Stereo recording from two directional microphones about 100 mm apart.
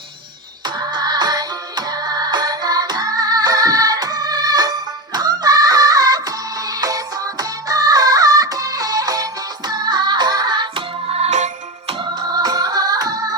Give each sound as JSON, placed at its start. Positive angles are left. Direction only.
{"t": 0.8, "sound": "music", "side_deg": -45}
{"t": 5.1, "sound": "a sound", "side_deg": -40}
{"t": 6.8, "sound": "music", "side_deg": -40}
{"t": 12.2, "sound": "music", "side_deg": -40}